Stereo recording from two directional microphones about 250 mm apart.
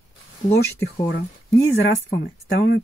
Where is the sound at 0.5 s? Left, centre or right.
Left.